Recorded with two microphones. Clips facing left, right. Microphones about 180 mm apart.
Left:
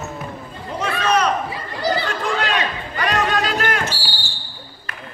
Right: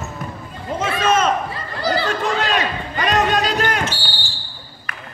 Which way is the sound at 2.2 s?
20° right (ahead or behind).